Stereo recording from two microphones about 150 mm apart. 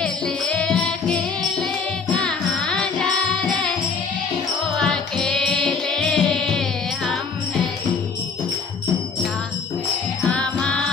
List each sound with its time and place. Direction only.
0.0 s music: 5° left (ahead or behind)
4.7 s music: centre (ahead or behind)
10.2 s music: 5° left (ahead or behind)